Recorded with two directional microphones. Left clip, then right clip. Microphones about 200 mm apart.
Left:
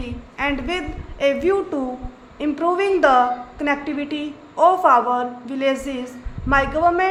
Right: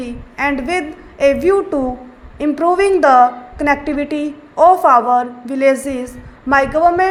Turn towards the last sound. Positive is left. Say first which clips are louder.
# right 5 dB
turn(degrees=-20)  # may be behind; listen again after turning